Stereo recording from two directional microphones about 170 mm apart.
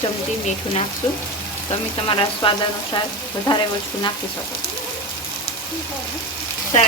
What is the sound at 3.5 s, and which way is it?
Speech, 25° left (ahead or behind).